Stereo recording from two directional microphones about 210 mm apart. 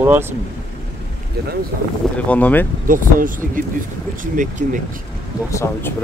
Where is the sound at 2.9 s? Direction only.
40° right (ahead or behind).